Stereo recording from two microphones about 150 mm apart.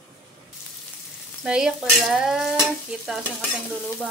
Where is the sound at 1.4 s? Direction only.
5° right (ahead or behind).